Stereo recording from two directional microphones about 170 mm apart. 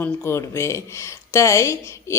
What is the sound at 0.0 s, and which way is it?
A woman's voice, 15° left (ahead or behind).